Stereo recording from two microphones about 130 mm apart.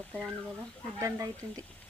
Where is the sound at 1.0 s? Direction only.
25° right (ahead or behind).